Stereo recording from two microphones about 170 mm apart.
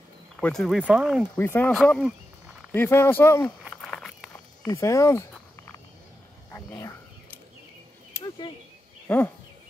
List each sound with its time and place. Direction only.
0.4 s speech: 5° left (ahead or behind)
1.4 s speech: 10° left (ahead or behind)
2.7 s speech: 15° left (ahead or behind)
3.7 s a sound: 5° left (ahead or behind)
4.6 s speech: 20° left (ahead or behind)
6.5 s a sound: 20° left (ahead or behind)
9.0 s speech: 10° left (ahead or behind)